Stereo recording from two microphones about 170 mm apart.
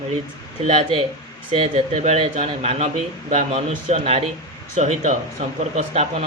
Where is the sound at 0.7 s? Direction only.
35° right (ahead or behind).